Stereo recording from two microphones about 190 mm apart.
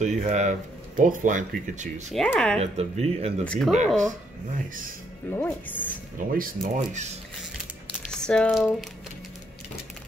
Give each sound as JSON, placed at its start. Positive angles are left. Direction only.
{"t": 0.0, "sound": "speech", "side_deg": -40}
{"t": 2.1, "sound": "speech", "side_deg": 5}
{"t": 2.6, "sound": "speech", "side_deg": -35}
{"t": 3.4, "sound": "speech", "side_deg": 5}
{"t": 5.3, "sound": "speech", "side_deg": 10}
{"t": 6.1, "sound": "speech", "side_deg": -45}
{"t": 8.1, "sound": "speech", "side_deg": 5}